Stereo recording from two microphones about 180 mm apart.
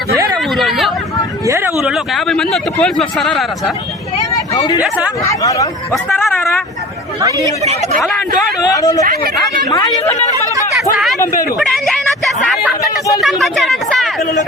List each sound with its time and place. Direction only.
0.5 s chatter: centre (ahead or behind)
1.5 s speech: 15° right (ahead or behind)
1.8 s a man's voice: centre (ahead or behind)
4.4 s a sound: 20° left (ahead or behind)
5.2 s speech: 20° left (ahead or behind)
7.8 s a man's voice: centre (ahead or behind)
8.6 s speech: 20° left (ahead or behind)
9.0 s speech: 50° right (ahead or behind)
10.9 s a man's voice: centre (ahead or behind)